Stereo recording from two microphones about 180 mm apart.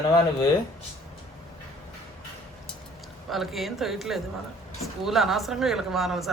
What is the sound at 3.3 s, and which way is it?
Speech, centre (ahead or behind).